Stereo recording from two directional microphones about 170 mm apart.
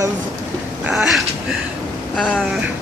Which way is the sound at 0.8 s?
Centre (ahead or behind).